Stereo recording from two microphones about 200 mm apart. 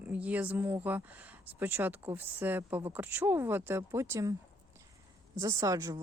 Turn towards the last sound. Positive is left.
turn(degrees=-15)  # may be behind; listen again after turning